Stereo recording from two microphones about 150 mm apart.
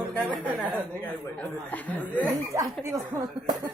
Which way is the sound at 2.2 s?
20° right (ahead or behind).